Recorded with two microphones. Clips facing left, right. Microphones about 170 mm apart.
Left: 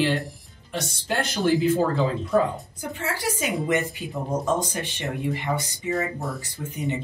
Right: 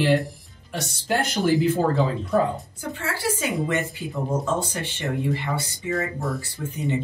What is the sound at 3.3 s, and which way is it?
Speech, 15° left (ahead or behind).